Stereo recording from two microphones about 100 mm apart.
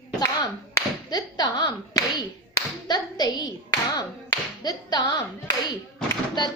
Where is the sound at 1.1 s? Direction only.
45° left (ahead or behind).